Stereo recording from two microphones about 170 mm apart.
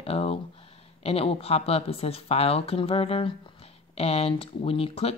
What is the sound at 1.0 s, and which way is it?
Speech, 35° left (ahead or behind).